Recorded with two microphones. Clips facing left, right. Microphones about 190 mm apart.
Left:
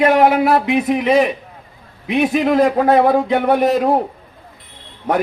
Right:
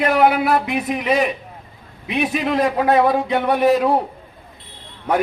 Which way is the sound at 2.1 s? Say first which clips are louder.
Left 5 dB; 50° left (ahead or behind).